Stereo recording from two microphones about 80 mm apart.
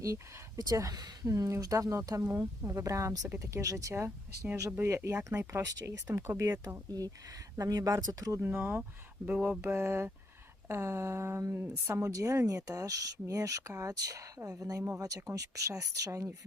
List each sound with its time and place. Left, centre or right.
0.0 s a woman's voice: right
7.5 s speech: right
8.4 s a woman's voice: right